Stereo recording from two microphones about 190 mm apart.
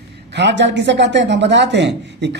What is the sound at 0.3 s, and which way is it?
Speech, 65° right (ahead or behind).